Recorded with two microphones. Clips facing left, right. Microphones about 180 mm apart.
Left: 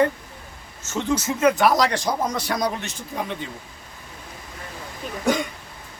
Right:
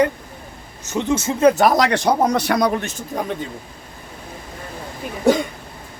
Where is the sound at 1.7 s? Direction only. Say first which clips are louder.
Right 4 dB; 60° right (ahead or behind).